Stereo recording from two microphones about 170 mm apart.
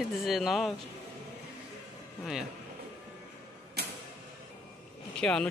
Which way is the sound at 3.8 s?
70° right (ahead or behind).